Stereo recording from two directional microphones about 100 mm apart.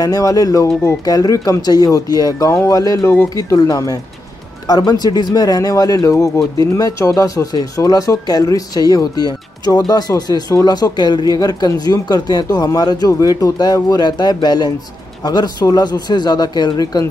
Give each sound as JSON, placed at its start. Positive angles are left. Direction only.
{"t": 0.0, "sound": "speech", "side_deg": 35}